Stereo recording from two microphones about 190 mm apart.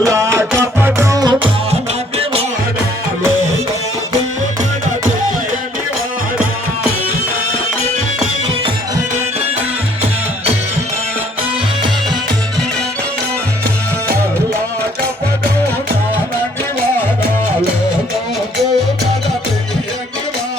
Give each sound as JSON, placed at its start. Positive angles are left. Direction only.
{"t": 0.0, "sound": "music", "side_deg": -15}